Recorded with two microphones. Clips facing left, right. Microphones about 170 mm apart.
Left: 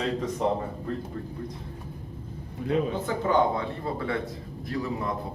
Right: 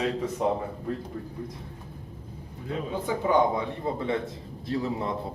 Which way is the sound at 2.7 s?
70° left (ahead or behind).